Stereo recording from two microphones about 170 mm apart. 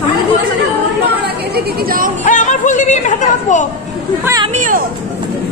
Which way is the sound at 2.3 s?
45° left (ahead or behind).